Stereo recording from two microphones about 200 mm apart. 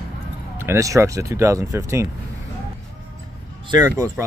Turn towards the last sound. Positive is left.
turn(degrees=-15)  # may be behind; listen again after turning